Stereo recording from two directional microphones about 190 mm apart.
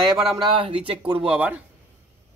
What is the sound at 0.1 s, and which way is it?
Speech, centre (ahead or behind).